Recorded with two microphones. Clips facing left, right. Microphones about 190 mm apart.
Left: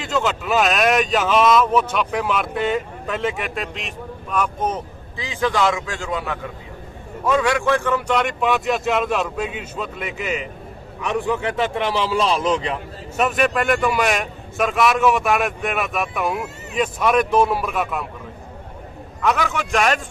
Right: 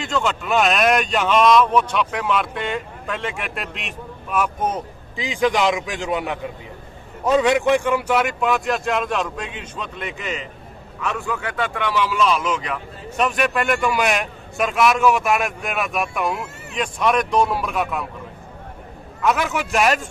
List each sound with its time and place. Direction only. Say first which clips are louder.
0.0 s speech: left 1 dB; centre (ahead or behind)
11.0 s a man's voice: left 4 dB; 20° left (ahead or behind)
13.1 s speech: left 1 dB; 5° left (ahead or behind)
19.2 s speech: even; 5° right (ahead or behind)